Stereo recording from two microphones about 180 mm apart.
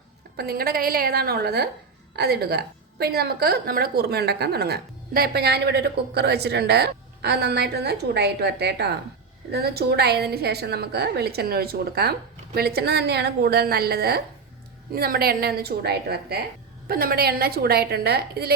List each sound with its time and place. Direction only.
0.3 s a woman's voice: 55° right (ahead or behind)